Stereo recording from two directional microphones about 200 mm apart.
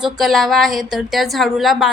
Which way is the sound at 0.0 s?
Centre (ahead or behind).